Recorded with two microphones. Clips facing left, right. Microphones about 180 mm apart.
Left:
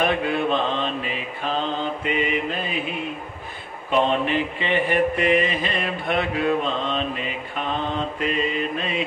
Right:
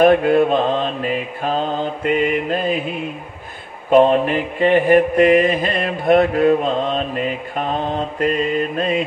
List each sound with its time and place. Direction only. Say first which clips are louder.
0.0 s mantra: right 10 dB; 45° right (ahead or behind)
3.9 s mantra: right 8 dB; 45° right (ahead or behind)